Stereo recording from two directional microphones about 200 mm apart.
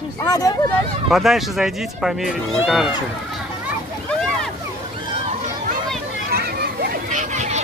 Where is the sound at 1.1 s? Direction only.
Centre (ahead or behind).